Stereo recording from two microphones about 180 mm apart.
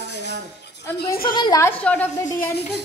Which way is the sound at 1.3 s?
25° left (ahead or behind).